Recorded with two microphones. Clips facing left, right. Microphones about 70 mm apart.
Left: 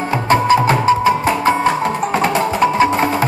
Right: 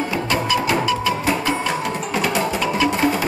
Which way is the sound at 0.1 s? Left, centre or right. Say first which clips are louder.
Left 12 dB; left.